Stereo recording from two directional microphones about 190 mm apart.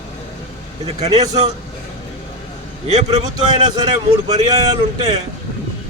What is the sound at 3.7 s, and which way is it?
Speech, 20° right (ahead or behind).